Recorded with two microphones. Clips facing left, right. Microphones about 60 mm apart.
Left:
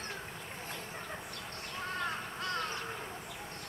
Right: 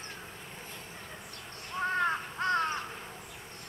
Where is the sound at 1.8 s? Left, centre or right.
Right.